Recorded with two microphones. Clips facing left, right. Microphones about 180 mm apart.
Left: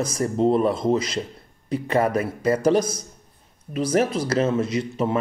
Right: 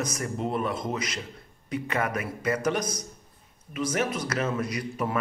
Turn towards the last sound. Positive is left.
turn(degrees=25)  # may be behind; listen again after turning